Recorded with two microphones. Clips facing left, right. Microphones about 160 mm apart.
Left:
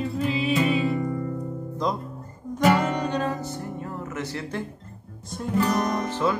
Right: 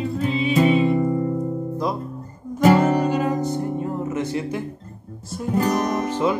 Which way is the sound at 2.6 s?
35° right (ahead or behind).